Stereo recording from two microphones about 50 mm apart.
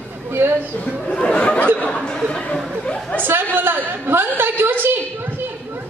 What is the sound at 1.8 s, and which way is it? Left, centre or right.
Speech, left.